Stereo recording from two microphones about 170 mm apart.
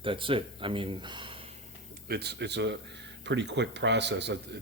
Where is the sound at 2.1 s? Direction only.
75° right (ahead or behind).